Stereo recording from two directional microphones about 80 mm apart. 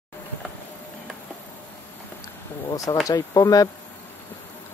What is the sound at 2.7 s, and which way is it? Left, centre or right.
Speech, left.